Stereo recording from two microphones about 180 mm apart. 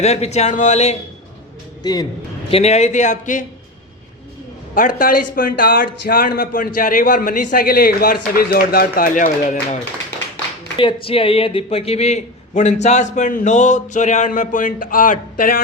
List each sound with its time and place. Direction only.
0.0 s a man's voice: 35° left (ahead or behind)
1.8 s speech: 25° left (ahead or behind)
2.5 s a man's voice: 35° left (ahead or behind)
4.7 s a man's voice: 50° left (ahead or behind)
10.8 s a man's voice: 30° left (ahead or behind); by 15.6 s 50° left (ahead or behind)